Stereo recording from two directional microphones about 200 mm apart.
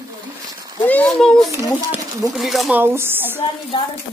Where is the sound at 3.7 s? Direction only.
25° left (ahead or behind).